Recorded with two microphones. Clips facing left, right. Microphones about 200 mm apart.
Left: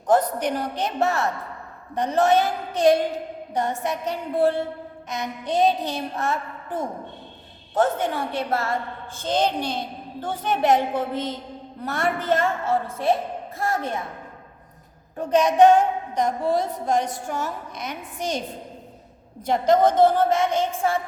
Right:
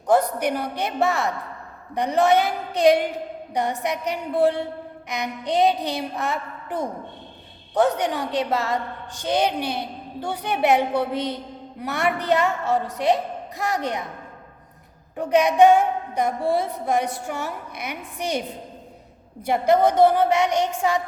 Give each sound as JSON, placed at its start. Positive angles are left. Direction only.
{"t": 0.1, "sound": "a woman's voice", "side_deg": -10}
{"t": 15.1, "sound": "a woman's voice", "side_deg": -10}
{"t": 19.5, "sound": "a woman's voice", "side_deg": -10}